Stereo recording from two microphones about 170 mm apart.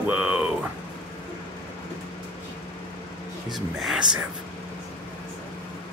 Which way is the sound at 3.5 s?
Centre (ahead or behind).